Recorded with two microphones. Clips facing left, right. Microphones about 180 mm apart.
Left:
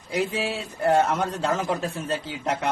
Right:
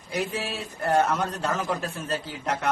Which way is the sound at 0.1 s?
25° left (ahead or behind).